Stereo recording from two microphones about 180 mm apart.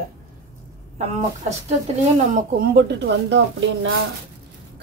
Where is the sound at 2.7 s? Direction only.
75° right (ahead or behind).